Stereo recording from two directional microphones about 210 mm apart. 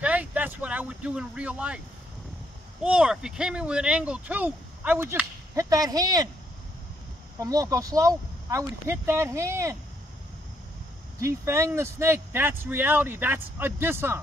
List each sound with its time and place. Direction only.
0.0 s a sound: 5° right (ahead or behind)
2.8 s speech: 5° right (ahead or behind)
7.3 s speech: 15° right (ahead or behind)
11.1 s speech: 15° right (ahead or behind)